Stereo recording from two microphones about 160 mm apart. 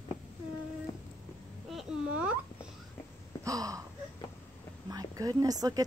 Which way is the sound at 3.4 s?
20° right (ahead or behind).